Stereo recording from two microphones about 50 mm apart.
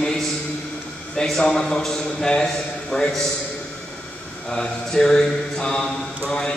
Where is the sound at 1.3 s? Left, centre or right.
Centre.